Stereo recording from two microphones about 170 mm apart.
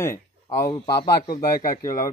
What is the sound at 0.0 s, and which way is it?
A man's voice, 20° left (ahead or behind).